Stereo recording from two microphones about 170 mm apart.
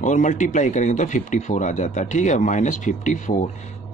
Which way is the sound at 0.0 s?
45° left (ahead or behind).